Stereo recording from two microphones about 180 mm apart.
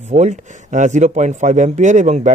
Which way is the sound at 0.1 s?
40° right (ahead or behind).